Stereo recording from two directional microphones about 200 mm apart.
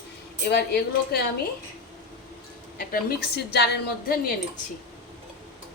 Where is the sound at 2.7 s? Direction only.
50° left (ahead or behind).